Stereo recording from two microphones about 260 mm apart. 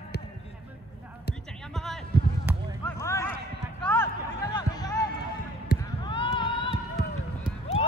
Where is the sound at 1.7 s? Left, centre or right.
Centre.